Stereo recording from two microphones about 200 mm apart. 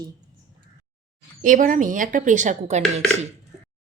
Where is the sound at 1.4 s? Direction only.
40° right (ahead or behind).